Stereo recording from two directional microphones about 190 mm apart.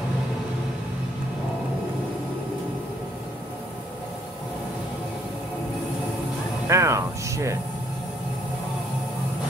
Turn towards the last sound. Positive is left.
turn(degrees=-15)  # may be behind; listen again after turning